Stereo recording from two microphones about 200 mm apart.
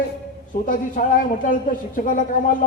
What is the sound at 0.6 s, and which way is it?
Speech, 40° left (ahead or behind).